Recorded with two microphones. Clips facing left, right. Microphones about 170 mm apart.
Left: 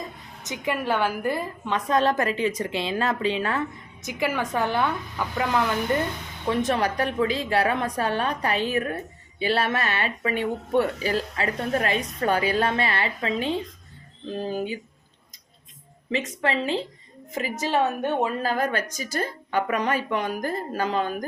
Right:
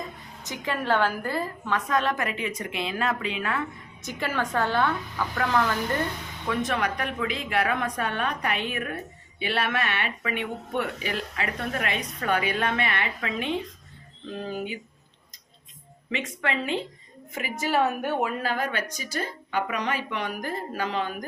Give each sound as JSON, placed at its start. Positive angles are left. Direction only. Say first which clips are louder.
{"t": 0.4, "sound": "a woman's voice", "louder": "left 1 dB", "side_deg": 20}
{"t": 4.0, "sound": "a woman's voice", "louder": "left 3 dB", "side_deg": 15}
{"t": 6.5, "sound": "speech", "louder": "left 3 dB", "side_deg": 35}
{"t": 16.0, "sound": "speech", "louder": "left 4 dB", "side_deg": 35}
{"t": 17.7, "sound": "a woman's voice", "louder": "even", "side_deg": 25}
{"t": 18.4, "sound": "speech", "louder": "left 3 dB", "side_deg": 40}